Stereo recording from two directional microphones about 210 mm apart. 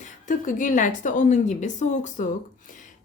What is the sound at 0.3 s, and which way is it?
A woman's voice, 40° left (ahead or behind).